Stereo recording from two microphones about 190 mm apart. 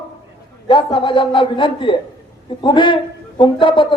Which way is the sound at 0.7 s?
25° left (ahead or behind).